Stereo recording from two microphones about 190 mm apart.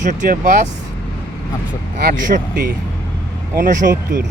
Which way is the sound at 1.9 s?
45° right (ahead or behind).